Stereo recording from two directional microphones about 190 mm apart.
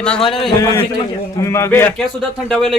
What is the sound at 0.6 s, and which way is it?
Speech, 15° left (ahead or behind).